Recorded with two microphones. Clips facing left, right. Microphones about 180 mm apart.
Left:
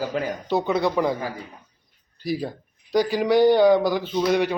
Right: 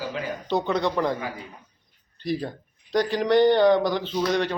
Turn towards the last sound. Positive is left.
turn(degrees=10)  # may be behind; listen again after turning